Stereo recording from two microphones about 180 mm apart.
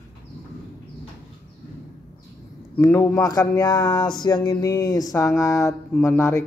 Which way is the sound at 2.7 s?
10° left (ahead or behind).